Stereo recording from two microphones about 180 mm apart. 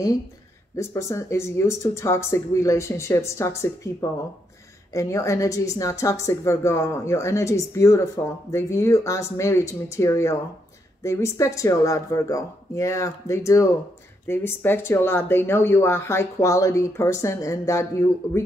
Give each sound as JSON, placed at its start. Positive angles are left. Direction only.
{"t": 0.7, "sound": "a woman's voice", "side_deg": 15}